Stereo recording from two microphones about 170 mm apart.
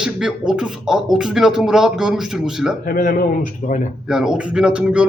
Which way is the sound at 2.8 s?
60° left (ahead or behind).